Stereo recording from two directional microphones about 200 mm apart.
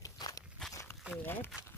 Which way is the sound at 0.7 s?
15° left (ahead or behind).